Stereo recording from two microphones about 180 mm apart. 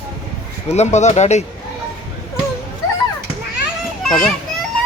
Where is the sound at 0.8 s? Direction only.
40° left (ahead or behind).